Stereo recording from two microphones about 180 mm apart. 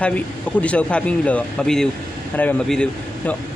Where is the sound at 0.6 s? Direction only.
5° left (ahead or behind).